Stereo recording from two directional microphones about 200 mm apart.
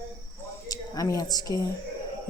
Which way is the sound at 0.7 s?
20° left (ahead or behind).